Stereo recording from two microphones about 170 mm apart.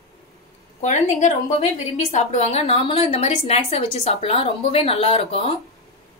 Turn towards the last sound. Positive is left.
turn(degrees=35)  # may be behind; listen again after turning